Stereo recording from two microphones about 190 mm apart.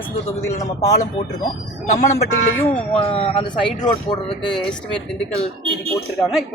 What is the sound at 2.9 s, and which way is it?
Speech, 30° left (ahead or behind).